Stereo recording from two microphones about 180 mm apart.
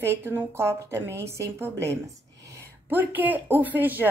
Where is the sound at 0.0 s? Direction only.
10° right (ahead or behind).